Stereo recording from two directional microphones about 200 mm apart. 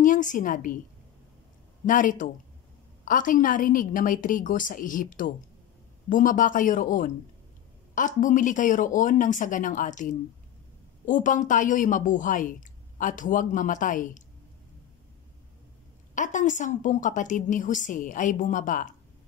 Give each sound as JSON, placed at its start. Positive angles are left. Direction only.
{"t": 0.0, "sound": "a woman's voice", "side_deg": 40}
{"t": 1.9, "sound": "a woman's voice", "side_deg": 40}
{"t": 16.2, "sound": "a woman's voice", "side_deg": 40}